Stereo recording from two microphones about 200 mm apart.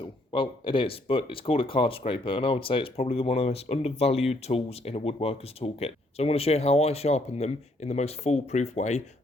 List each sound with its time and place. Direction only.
0.0 s speech: 25° left (ahead or behind)